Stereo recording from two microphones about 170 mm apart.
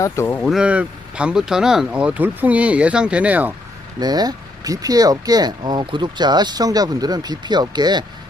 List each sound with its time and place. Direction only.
0.0 s speech: 15° left (ahead or behind)
0.4 s speech: 5° right (ahead or behind)
4.0 s speech: 25° right (ahead or behind)